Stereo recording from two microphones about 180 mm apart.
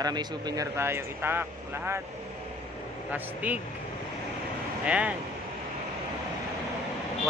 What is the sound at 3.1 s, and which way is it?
Speech, 10° right (ahead or behind).